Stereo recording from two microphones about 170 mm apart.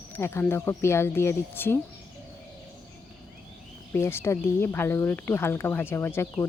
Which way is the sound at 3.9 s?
15° left (ahead or behind).